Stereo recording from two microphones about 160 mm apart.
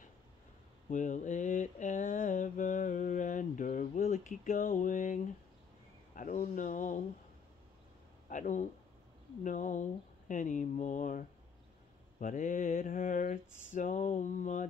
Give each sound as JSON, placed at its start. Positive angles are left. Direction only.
{"t": 0.8, "sound": "mantra", "side_deg": 50}
{"t": 6.1, "sound": "speech", "side_deg": 55}
{"t": 8.3, "sound": "speech", "side_deg": 50}
{"t": 12.2, "sound": "mantra", "side_deg": 55}
{"t": 13.7, "sound": "speech", "side_deg": 55}